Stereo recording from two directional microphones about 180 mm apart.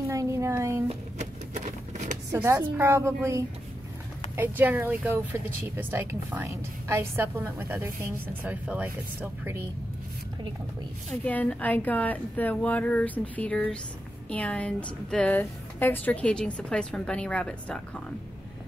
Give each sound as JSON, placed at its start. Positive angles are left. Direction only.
{"t": 0.1, "sound": "a sound", "side_deg": -15}
{"t": 0.8, "sound": "music", "side_deg": -40}
{"t": 2.3, "sound": "a woman's voice", "side_deg": -15}
{"t": 11.2, "sound": "a woman's voice", "side_deg": 10}